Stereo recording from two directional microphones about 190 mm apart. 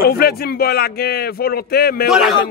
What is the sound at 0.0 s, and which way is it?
Speech, 55° left (ahead or behind).